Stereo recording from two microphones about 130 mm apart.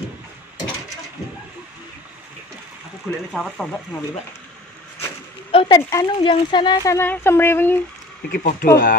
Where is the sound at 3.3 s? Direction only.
5° left (ahead or behind).